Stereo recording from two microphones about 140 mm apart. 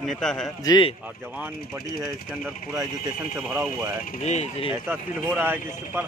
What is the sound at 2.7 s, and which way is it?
Speech, 20° right (ahead or behind).